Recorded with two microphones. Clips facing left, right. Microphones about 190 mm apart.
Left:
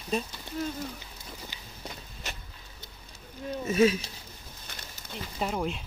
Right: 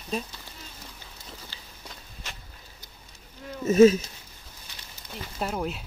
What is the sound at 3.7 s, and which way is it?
Speech, 40° right (ahead or behind).